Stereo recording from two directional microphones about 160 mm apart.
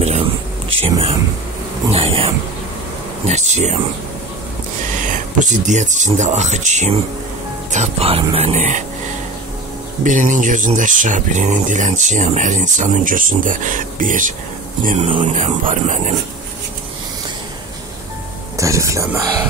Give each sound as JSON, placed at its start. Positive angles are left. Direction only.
{"t": 0.7, "sound": "speech", "side_deg": -35}
{"t": 1.9, "sound": "a sound", "side_deg": -35}
{"t": 3.3, "sound": "speech", "side_deg": -45}
{"t": 5.0, "sound": "speech", "side_deg": -55}
{"t": 10.0, "sound": "speech", "side_deg": -55}
{"t": 15.0, "sound": "speech", "side_deg": -40}
{"t": 15.3, "sound": "speech", "side_deg": -50}
{"t": 18.6, "sound": "speech", "side_deg": -20}